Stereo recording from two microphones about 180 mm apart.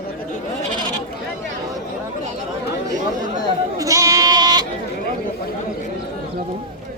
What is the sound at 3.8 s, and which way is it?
Goat, 20° right (ahead or behind).